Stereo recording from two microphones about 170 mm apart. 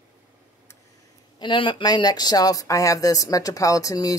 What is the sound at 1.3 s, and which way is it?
Speech, 30° left (ahead or behind).